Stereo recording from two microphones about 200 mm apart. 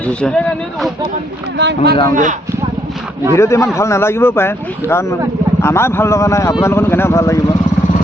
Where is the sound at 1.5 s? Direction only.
55° right (ahead or behind).